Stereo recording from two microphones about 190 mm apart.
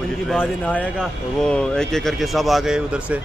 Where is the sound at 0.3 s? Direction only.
10° left (ahead or behind).